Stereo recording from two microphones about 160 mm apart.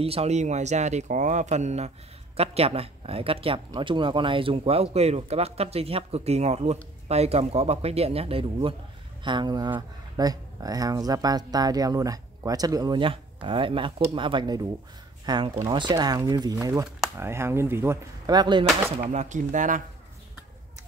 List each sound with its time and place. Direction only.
0.0 s speech: 40° right (ahead or behind)
19.0 s speech: 50° right (ahead or behind)